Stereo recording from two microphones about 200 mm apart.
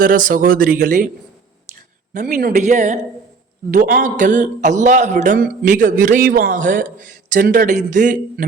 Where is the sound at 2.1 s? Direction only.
40° right (ahead or behind).